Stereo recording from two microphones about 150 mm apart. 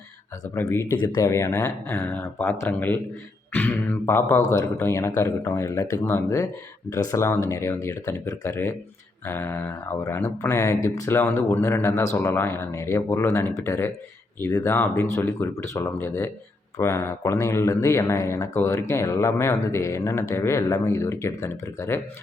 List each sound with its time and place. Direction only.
0.5 s speech: 20° left (ahead or behind)